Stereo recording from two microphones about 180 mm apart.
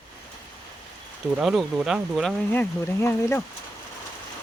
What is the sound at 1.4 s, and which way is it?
Speech, 5° right (ahead or behind).